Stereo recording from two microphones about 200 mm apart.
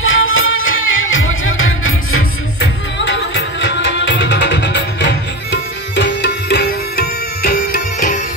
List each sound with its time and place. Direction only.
0.0 s music: 80° left; by 7.5 s 50° left (ahead or behind)